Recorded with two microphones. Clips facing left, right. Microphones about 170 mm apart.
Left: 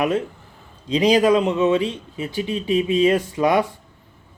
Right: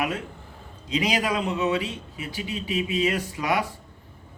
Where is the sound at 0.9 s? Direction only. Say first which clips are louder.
Left 9 dB; 35° left (ahead or behind).